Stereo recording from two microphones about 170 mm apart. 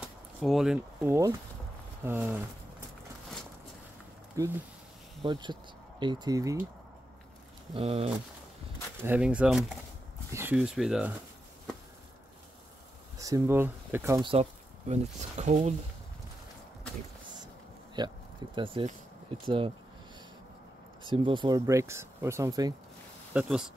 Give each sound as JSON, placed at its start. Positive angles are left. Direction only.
{"t": 0.0, "sound": "a sound", "side_deg": 0}
{"t": 1.0, "sound": "speech", "side_deg": -15}
{"t": 4.4, "sound": "speech", "side_deg": -20}
{"t": 7.7, "sound": "speech", "side_deg": -35}
{"t": 9.0, "sound": "speech", "side_deg": -10}
{"t": 13.2, "sound": "speech", "side_deg": -15}
{"t": 14.2, "sound": "speech", "side_deg": -35}
{"t": 17.9, "sound": "speech", "side_deg": -25}
{"t": 21.0, "sound": "speech", "side_deg": -30}
{"t": 23.3, "sound": "speech", "side_deg": -5}